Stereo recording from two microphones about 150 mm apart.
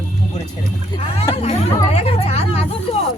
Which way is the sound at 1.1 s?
40° left (ahead or behind).